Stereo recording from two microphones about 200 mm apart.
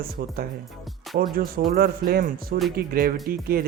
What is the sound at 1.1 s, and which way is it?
Speech, 50° right (ahead or behind).